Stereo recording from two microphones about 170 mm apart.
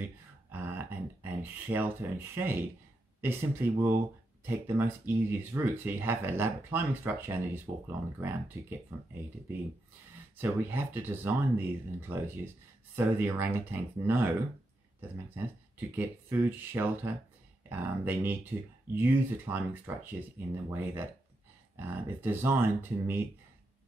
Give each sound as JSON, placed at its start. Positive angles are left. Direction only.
{"t": 0.5, "sound": "a sound", "side_deg": -10}
{"t": 2.3, "sound": "speech", "side_deg": -15}
{"t": 10.3, "sound": "speech", "side_deg": -10}
{"t": 16.0, "sound": "speech", "side_deg": -10}